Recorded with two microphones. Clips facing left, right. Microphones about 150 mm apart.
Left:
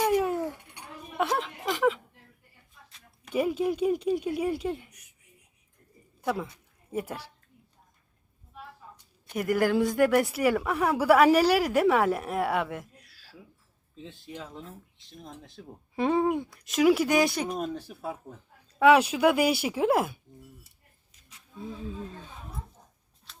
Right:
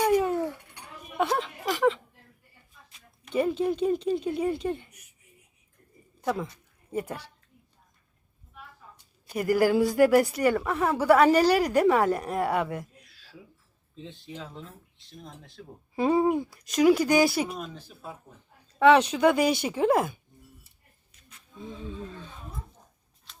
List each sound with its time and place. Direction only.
0.0 s a sound: centre (ahead or behind)
1.1 s speech: centre (ahead or behind)
3.2 s speech: 10° left (ahead or behind)
6.2 s a woman's voice: 5° left (ahead or behind)
9.3 s speech: centre (ahead or behind)
16.0 s speech: 5° right (ahead or behind)
17.7 s speech: 70° left (ahead or behind)
18.8 s speech: 10° left (ahead or behind)
21.6 s speech: 5° left (ahead or behind)